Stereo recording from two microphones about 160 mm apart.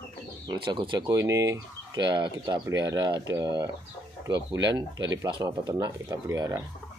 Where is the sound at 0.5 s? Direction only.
30° right (ahead or behind).